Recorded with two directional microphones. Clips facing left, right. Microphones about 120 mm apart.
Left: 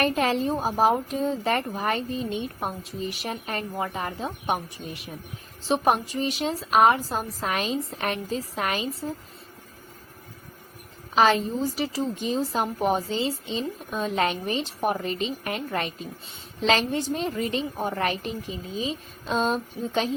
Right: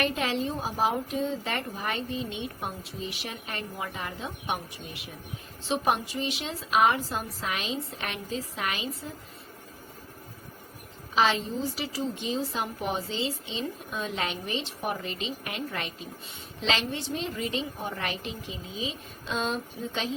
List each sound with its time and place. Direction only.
0.0 s a woman's voice: 45° left (ahead or behind)
5.6 s a woman's voice: 45° left (ahead or behind)
11.1 s a woman's voice: 45° left (ahead or behind)